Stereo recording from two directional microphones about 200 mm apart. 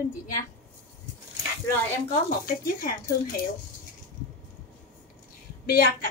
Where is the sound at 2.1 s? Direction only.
45° left (ahead or behind).